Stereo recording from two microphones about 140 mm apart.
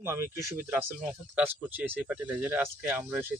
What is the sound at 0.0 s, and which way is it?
A man's voice, 20° right (ahead or behind).